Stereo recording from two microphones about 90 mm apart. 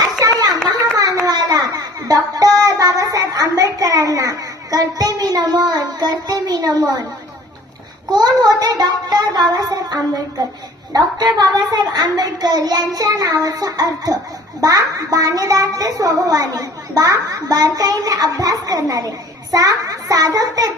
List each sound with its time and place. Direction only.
0.0 s a sound: 45° right (ahead or behind)
8.1 s child singing: 45° right (ahead or behind)
10.9 s a child's voice: 50° right (ahead or behind)